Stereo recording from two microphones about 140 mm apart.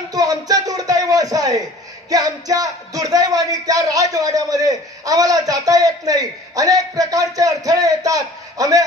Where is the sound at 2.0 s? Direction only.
25° right (ahead or behind).